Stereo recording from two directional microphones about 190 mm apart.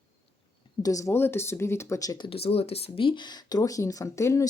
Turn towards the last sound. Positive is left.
turn(degrees=15)  # may be behind; listen again after turning